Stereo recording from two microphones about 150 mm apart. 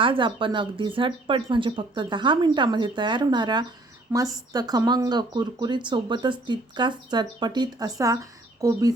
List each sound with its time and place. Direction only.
0.0 s speech: 35° right (ahead or behind)